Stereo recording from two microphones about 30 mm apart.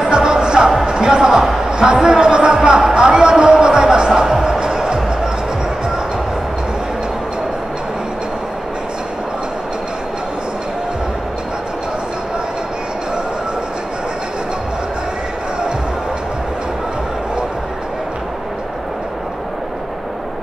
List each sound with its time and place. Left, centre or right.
0.0 s music: right
1.7 s a sound: right
4.5 s music: right